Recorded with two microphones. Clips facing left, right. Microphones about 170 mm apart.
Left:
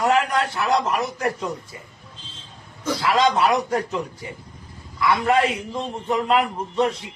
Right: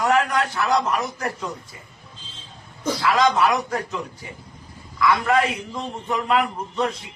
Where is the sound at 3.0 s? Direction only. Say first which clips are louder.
Even; 25° left (ahead or behind).